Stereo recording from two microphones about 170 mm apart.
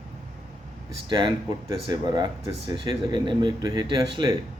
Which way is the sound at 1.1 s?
25° right (ahead or behind).